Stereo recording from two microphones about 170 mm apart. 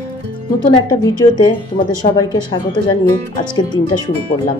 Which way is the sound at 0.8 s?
20° left (ahead or behind).